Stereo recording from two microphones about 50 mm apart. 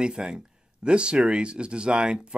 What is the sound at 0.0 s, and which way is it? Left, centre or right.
Speech, centre.